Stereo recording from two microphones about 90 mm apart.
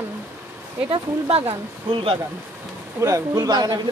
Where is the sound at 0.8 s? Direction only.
65° right (ahead or behind).